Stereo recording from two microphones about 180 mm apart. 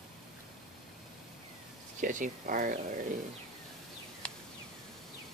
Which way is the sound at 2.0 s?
45° right (ahead or behind).